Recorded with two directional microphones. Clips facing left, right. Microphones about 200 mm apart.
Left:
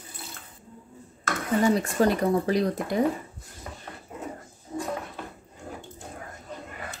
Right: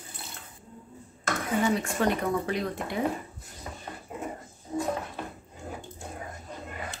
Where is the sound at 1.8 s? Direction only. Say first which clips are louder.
Left 4 dB; 35° left (ahead or behind).